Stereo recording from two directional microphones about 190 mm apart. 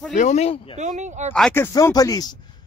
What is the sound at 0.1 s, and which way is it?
Speech, 40° left (ahead or behind).